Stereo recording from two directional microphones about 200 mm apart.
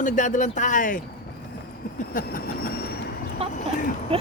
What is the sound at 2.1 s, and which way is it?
Train, 45° left (ahead or behind).